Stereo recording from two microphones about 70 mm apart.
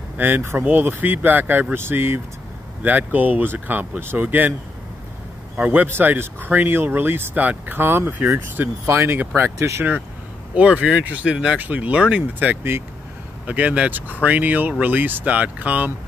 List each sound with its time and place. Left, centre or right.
0.2 s speech: right
5.7 s speech: right
10.5 s speech: centre